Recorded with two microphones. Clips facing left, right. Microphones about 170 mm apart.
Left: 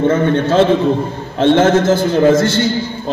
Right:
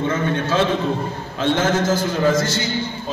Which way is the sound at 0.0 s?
55° left (ahead or behind).